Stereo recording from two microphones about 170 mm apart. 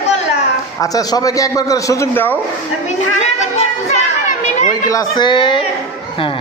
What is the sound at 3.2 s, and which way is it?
Chatter, 40° left (ahead or behind).